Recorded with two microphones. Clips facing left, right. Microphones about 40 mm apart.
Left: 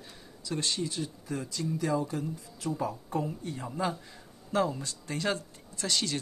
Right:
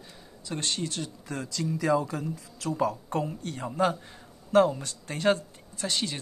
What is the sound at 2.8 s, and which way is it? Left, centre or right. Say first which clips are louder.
Speech: right 6 dB; right.